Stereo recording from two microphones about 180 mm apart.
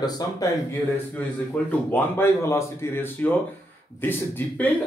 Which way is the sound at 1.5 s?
10° left (ahead or behind).